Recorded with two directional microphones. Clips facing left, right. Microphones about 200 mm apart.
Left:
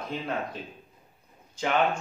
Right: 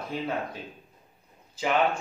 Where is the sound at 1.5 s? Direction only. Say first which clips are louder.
Even; 5° right (ahead or behind).